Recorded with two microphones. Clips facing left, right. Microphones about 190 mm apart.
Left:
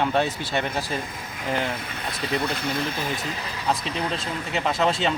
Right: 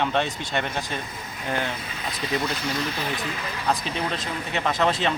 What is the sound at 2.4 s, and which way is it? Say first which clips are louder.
Speech: left 1 dB; 55° left (ahead or behind).